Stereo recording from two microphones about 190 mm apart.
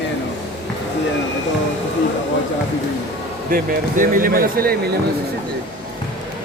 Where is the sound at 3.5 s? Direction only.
45° right (ahead or behind).